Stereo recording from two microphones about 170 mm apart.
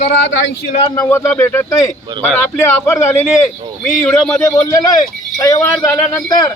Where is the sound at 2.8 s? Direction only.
15° left (ahead or behind).